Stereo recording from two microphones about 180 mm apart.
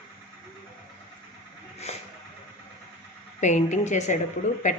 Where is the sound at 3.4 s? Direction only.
40° left (ahead or behind).